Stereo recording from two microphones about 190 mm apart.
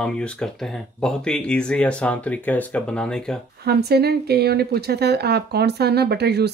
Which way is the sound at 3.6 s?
55° right (ahead or behind).